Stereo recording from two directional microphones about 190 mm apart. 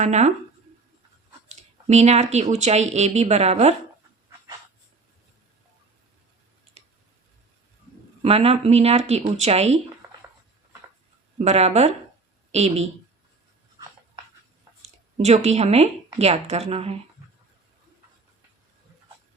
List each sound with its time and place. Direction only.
0.0 s speech: 35° right (ahead or behind)
1.5 s speech: 35° right (ahead or behind)
8.2 s speech: 30° right (ahead or behind)
11.3 s speech: 35° right (ahead or behind)
14.8 s speech: 35° right (ahead or behind)